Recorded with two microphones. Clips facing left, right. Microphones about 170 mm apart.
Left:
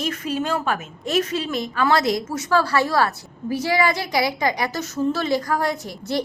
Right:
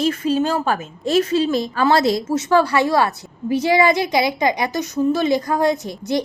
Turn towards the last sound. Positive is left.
turn(degrees=-20)  # may be behind; listen again after turning